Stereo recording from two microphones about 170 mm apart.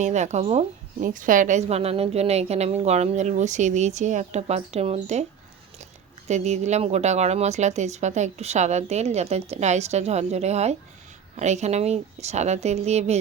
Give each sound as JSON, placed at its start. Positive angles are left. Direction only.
{"t": 0.0, "sound": "speech", "side_deg": -45}
{"t": 6.2, "sound": "speech", "side_deg": -40}